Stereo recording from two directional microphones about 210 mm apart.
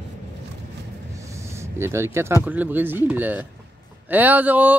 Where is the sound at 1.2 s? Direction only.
15° right (ahead or behind).